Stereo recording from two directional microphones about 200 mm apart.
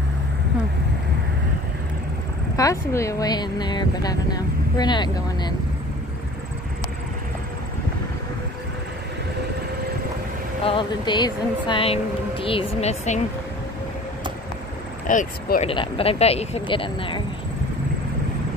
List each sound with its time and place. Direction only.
2.5 s speech: 15° left (ahead or behind)
10.6 s speech: 25° left (ahead or behind)
15.0 s speech: 45° left (ahead or behind)
15.6 s speech: 25° left (ahead or behind)